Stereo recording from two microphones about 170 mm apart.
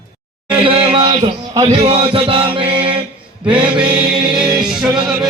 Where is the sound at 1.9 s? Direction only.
30° right (ahead or behind).